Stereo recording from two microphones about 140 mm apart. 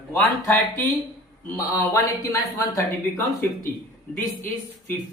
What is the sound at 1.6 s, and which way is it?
Speech, 25° left (ahead or behind).